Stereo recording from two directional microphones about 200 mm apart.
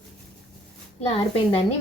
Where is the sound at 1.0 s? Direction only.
30° left (ahead or behind).